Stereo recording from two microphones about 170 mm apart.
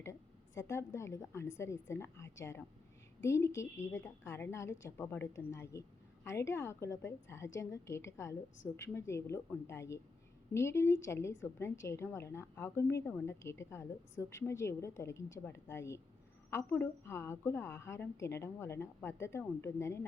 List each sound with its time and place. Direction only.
0.0 s a woman's voice: 15° left (ahead or behind)